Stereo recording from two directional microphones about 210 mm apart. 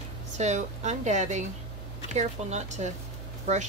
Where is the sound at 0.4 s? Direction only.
35° right (ahead or behind).